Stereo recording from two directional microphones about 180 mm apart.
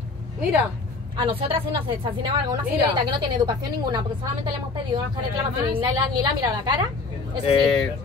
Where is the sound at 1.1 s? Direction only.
30° right (ahead or behind).